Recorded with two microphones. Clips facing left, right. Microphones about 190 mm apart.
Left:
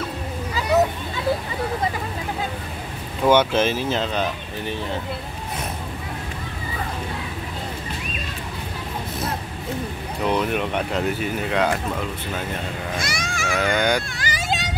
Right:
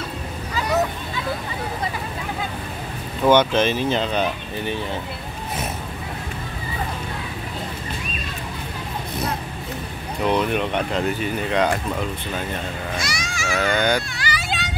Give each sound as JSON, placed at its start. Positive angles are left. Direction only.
{"t": 3.3, "sound": "speech", "side_deg": 5}
{"t": 10.2, "sound": "speech", "side_deg": 5}
{"t": 13.0, "sound": "sheep", "side_deg": 55}
{"t": 13.6, "sound": "speech", "side_deg": 10}
{"t": 14.1, "sound": "a sound", "side_deg": 45}